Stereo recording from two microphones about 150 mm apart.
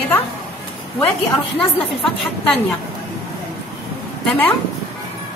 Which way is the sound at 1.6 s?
5° left (ahead or behind).